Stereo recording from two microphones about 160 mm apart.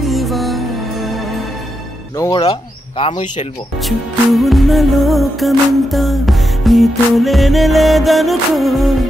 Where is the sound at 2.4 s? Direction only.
35° left (ahead or behind).